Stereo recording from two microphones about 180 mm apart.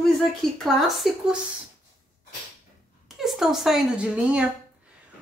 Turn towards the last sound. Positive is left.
turn(degrees=-5)  # may be behind; listen again after turning